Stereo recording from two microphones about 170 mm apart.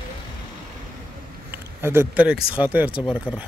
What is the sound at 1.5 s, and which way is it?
Speech, 15° right (ahead or behind).